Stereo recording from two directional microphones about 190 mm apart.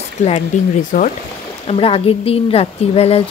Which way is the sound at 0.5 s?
40° left (ahead or behind).